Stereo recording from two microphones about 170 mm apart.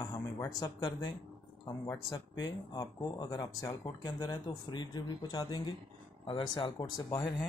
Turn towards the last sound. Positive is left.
turn(degrees=20)  # may be behind; listen again after turning